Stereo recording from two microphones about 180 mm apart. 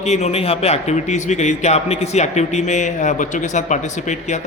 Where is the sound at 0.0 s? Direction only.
40° left (ahead or behind).